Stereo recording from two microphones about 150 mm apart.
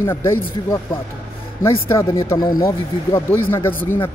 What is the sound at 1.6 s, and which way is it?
Speech, 20° left (ahead or behind).